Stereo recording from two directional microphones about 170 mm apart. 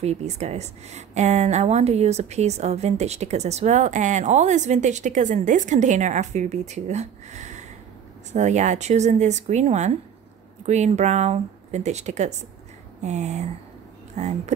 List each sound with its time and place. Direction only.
0.0 s speech: 40° right (ahead or behind)